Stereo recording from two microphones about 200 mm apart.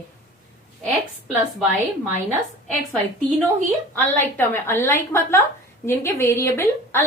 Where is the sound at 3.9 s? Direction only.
10° left (ahead or behind).